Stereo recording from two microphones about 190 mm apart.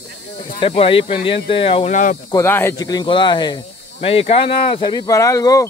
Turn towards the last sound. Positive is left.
turn(degrees=15)  # may be behind; listen again after turning